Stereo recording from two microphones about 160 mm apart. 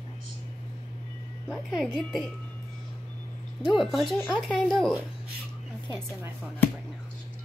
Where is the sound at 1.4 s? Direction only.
5° right (ahead or behind).